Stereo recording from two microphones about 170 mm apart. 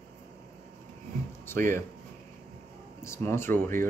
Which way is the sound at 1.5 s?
15° left (ahead or behind).